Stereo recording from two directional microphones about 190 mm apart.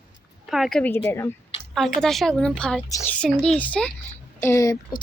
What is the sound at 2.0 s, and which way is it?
A woman's voice, centre (ahead or behind).